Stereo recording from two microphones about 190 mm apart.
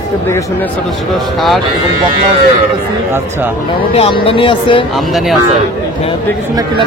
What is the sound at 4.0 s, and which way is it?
Speech, 30° left (ahead or behind).